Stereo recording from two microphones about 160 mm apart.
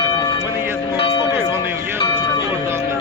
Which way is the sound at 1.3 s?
15° right (ahead or behind).